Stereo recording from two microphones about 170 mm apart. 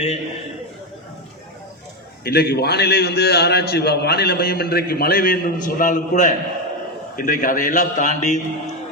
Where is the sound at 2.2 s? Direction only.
65° left (ahead or behind).